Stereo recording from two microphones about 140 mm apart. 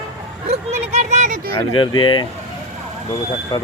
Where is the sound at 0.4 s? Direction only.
50° right (ahead or behind).